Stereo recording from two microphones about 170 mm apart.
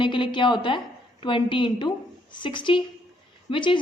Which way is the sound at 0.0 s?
30° left (ahead or behind).